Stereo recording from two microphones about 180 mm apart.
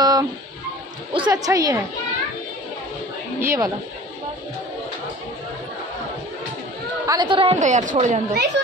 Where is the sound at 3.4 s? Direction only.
15° right (ahead or behind).